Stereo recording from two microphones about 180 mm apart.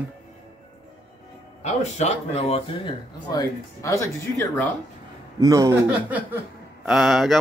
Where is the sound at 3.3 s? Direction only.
15° left (ahead or behind).